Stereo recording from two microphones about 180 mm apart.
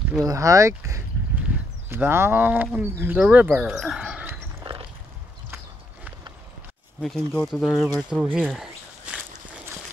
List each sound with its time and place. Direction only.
0.2 s speech: 20° right (ahead or behind)
7.0 s speech: 5° left (ahead or behind)
8.1 s a sound: 5° right (ahead or behind)